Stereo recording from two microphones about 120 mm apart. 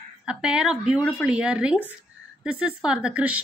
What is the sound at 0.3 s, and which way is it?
A woman's voice, 10° right (ahead or behind).